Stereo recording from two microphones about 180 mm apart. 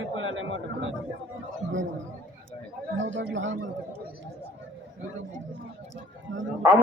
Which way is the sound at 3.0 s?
90° right.